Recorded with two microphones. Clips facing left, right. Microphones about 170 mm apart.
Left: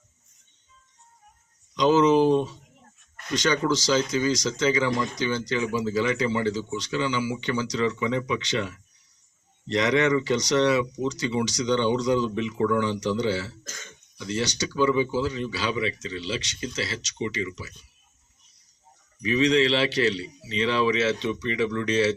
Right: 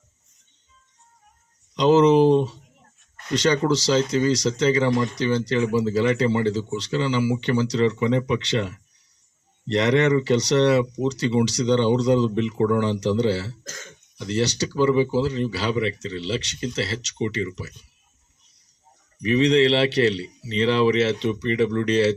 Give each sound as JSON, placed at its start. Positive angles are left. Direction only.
{"t": 1.7, "sound": "speech", "side_deg": -30}
{"t": 19.3, "sound": "speech", "side_deg": -30}